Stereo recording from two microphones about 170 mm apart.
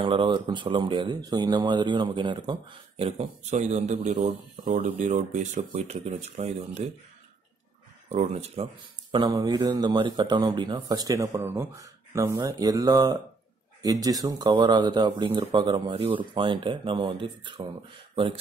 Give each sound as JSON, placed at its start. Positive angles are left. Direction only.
{"t": 0.0, "sound": "speech", "side_deg": -30}
{"t": 3.0, "sound": "speech", "side_deg": -40}
{"t": 8.1, "sound": "speech", "side_deg": -40}
{"t": 9.1, "sound": "speech", "side_deg": -25}